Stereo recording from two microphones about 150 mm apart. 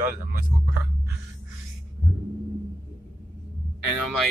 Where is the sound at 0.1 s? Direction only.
70° right (ahead or behind).